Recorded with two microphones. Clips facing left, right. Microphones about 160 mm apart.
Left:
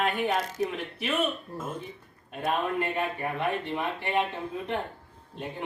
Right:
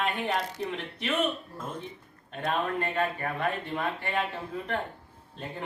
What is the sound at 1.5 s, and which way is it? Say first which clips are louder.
A man's voice: left 2 dB; 5° left (ahead or behind).